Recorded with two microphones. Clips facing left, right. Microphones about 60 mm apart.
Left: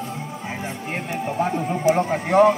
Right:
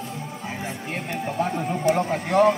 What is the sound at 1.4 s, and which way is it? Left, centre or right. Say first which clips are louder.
Speech: left 2 dB; left.